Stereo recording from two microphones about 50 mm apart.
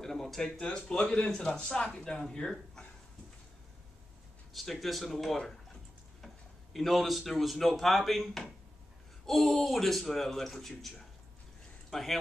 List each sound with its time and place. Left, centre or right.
0.0 s a man's voice: centre
4.6 s speech: centre